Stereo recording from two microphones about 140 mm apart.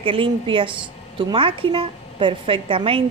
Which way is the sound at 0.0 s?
40° right (ahead or behind).